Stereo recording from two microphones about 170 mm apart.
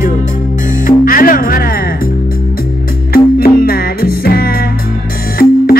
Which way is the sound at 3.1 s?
60° left (ahead or behind).